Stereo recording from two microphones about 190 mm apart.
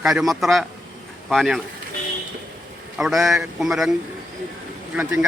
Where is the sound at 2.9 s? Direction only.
Centre (ahead or behind).